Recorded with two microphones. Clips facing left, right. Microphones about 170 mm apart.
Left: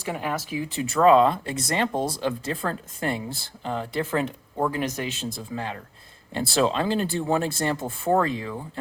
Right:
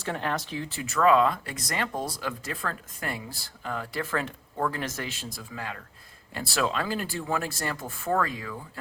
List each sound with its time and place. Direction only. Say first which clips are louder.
0.0 s speech: left 2 dB; 10° left (ahead or behind)
0.8 s speech: left 4 dB; 30° left (ahead or behind)